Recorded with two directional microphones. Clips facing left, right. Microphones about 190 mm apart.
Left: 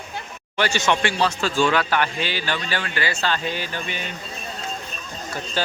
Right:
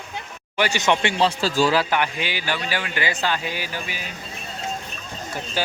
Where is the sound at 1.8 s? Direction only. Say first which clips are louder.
Even; 15° right (ahead or behind).